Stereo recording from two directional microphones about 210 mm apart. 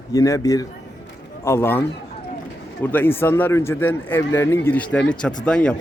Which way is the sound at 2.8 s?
10° left (ahead or behind).